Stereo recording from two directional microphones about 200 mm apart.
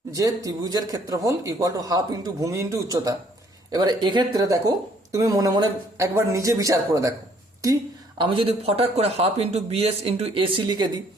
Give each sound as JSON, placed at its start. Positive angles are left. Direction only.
{"t": 0.1, "sound": "a man's voice", "side_deg": -15}
{"t": 8.2, "sound": "a man's voice", "side_deg": -25}